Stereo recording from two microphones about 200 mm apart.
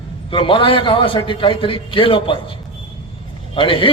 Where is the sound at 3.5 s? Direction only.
25° left (ahead or behind).